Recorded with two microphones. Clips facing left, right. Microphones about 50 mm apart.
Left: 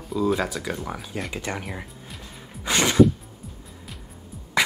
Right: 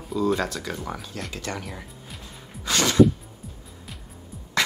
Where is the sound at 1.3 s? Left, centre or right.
Centre.